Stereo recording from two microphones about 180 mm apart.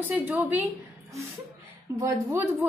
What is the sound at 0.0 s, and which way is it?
Speech, 10° right (ahead or behind).